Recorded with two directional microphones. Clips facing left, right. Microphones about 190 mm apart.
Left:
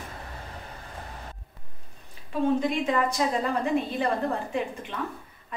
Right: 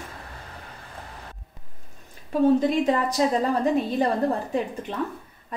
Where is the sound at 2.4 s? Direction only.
40° right (ahead or behind).